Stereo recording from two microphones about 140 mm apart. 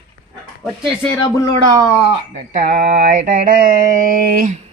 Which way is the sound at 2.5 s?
80° right.